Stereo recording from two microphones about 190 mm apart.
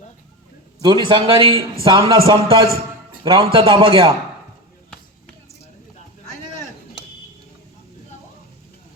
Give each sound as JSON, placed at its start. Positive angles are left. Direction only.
{"t": 0.8, "sound": "a man's voice", "side_deg": -25}